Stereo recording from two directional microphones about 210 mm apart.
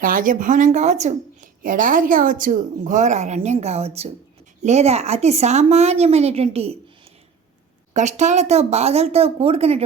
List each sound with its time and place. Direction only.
0.0 s a woman's voice: 40° right (ahead or behind)
7.9 s speech: 35° right (ahead or behind)